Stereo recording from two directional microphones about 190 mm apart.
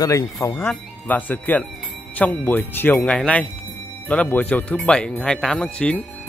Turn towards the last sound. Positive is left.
turn(degrees=5)  # may be behind; listen again after turning